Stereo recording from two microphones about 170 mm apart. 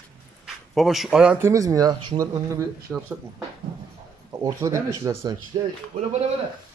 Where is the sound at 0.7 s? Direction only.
Centre (ahead or behind); by 2.6 s 20° right (ahead or behind).